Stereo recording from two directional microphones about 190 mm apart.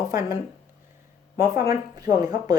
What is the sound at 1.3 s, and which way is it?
A woman's voice, 15° right (ahead or behind).